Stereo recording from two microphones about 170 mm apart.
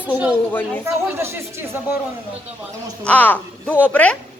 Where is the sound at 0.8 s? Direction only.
15° right (ahead or behind).